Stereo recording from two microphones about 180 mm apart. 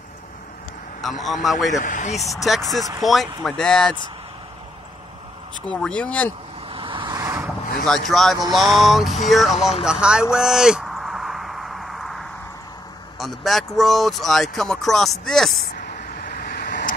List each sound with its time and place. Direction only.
1.2 s speech: centre (ahead or behind)
1.7 s speech: 45° left (ahead or behind)
2.4 s speech: centre (ahead or behind)
5.7 s speech: 5° left (ahead or behind)
6.7 s vehicle: 30° right (ahead or behind)
8.1 s speech: centre (ahead or behind)
10.3 s a sound: 5° right (ahead or behind)
13.2 s speech: centre (ahead or behind)
16.2 s vehicle: 50° left (ahead or behind)